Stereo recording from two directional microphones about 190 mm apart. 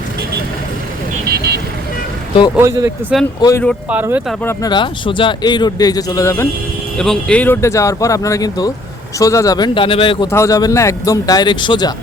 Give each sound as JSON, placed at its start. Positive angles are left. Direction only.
{"t": 2.6, "sound": "speech", "side_deg": -15}
{"t": 3.1, "sound": "speech", "side_deg": -5}
{"t": 3.4, "sound": "speech", "side_deg": 10}
{"t": 3.8, "sound": "speech", "side_deg": -10}
{"t": 4.4, "sound": "speech", "side_deg": 20}
{"t": 7.0, "sound": "speech", "side_deg": 5}
{"t": 10.3, "sound": "speech", "side_deg": 15}